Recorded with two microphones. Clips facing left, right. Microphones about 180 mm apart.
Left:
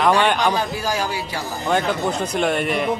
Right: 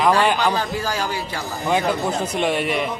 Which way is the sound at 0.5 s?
10° left (ahead or behind).